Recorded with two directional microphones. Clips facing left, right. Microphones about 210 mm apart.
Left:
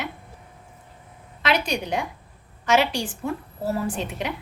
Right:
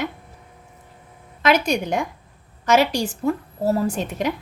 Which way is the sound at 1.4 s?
45° right (ahead or behind).